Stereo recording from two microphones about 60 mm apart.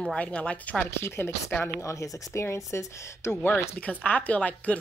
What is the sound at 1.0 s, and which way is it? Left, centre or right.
Speech, left.